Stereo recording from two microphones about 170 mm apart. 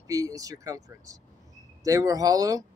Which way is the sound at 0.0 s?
20° right (ahead or behind).